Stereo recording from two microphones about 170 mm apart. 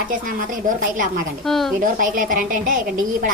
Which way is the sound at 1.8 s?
55° right (ahead or behind).